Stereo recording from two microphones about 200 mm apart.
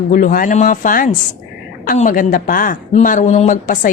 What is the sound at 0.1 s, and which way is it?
A woman's voice, 45° left (ahead or behind).